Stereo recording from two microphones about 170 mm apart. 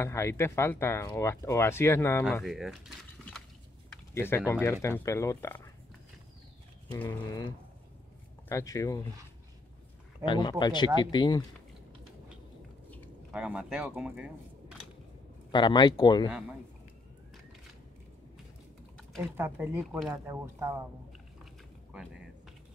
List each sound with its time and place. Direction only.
0.0 s speech: 15° left (ahead or behind)
2.4 s speech: centre (ahead or behind)
4.1 s speech: 15° left (ahead or behind)
6.9 s speech: 15° left (ahead or behind)
10.2 s speech: 25° left (ahead or behind)
13.3 s speech: 5° right (ahead or behind)
15.5 s speech: 25° left (ahead or behind)
16.3 s speech: 5° right (ahead or behind)
18.9 s typing: 5° left (ahead or behind)
19.3 s speech: 10° right (ahead or behind)